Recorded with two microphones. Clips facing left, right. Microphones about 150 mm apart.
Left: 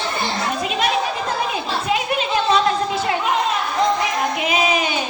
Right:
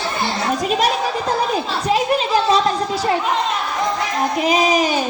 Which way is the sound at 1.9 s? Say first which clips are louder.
Right 4 dB; 35° right (ahead or behind).